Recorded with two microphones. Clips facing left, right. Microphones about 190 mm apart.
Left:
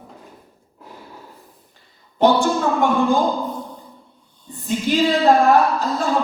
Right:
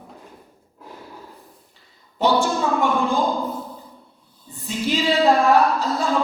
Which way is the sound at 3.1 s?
15° left (ahead or behind).